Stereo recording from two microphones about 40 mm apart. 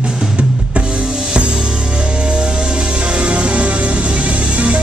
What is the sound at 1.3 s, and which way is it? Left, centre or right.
Music, right.